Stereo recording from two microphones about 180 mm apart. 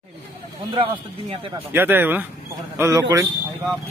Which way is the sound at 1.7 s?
10° right (ahead or behind).